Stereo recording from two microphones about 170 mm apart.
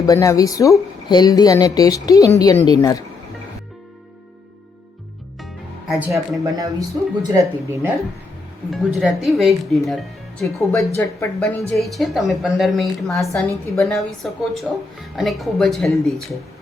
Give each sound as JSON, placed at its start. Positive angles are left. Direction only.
{"t": 0.0, "sound": "speech", "side_deg": 20}
{"t": 5.9, "sound": "a woman's voice", "side_deg": 0}
{"t": 6.4, "sound": "speech", "side_deg": -20}
{"t": 8.7, "sound": "a woman's voice", "side_deg": 0}
{"t": 10.7, "sound": "a woman's voice", "side_deg": 15}